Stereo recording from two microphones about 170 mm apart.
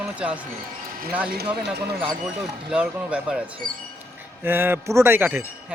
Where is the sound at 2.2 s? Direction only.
5° right (ahead or behind).